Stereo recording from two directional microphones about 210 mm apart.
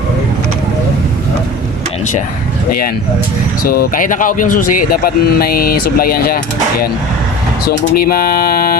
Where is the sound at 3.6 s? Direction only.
45° left (ahead or behind).